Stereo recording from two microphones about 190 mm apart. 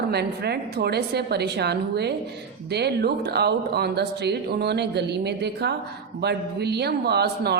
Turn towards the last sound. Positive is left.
turn(degrees=-60)  # may be behind; listen again after turning